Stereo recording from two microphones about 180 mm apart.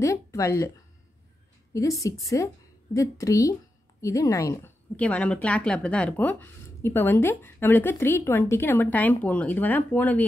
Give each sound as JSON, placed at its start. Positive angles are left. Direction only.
{"t": 0.0, "sound": "a woman's voice", "side_deg": 15}